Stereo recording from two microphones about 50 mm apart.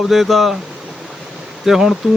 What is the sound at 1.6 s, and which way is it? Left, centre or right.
Speech, centre.